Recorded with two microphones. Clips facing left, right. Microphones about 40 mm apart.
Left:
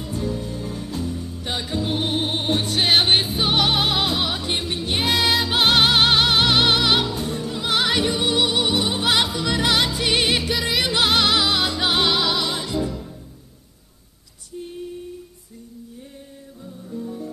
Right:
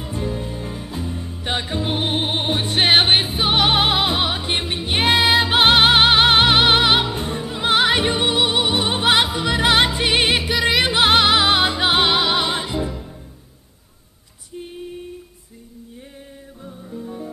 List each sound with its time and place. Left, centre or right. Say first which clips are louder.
0.0 s music: right 1 dB; right
1.1 s music: right 3 dB; right
10.5 s music: right 5 dB; centre
10.8 s music: right 3 dB; right
16.8 s music: left 1 dB; right